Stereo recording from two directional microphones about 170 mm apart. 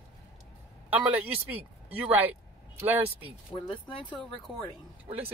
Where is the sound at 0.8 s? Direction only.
10° right (ahead or behind).